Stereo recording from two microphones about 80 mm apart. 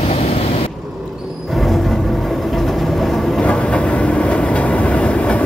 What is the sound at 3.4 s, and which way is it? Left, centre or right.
Train, centre.